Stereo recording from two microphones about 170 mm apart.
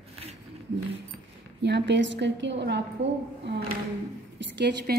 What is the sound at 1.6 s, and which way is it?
A woman's voice, 90° right.